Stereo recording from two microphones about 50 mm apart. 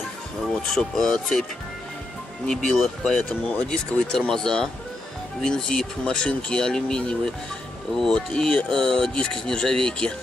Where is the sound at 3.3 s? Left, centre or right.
Left.